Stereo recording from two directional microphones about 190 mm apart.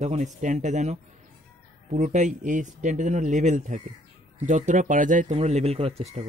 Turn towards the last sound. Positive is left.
turn(degrees=-35)  # may be behind; listen again after turning